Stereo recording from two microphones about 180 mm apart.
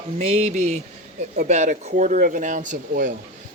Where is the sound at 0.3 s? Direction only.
35° right (ahead or behind).